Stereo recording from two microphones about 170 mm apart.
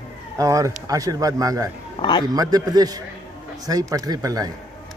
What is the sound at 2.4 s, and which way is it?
A man's voice, 20° right (ahead or behind).